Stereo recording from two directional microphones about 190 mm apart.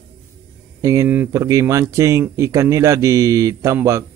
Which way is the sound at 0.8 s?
15° right (ahead or behind).